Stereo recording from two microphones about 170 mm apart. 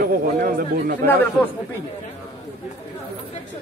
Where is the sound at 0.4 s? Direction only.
50° right (ahead or behind).